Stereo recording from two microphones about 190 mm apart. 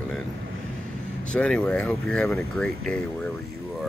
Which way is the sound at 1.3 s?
5° left (ahead or behind).